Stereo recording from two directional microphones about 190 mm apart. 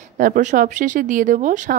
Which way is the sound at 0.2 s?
40° right (ahead or behind).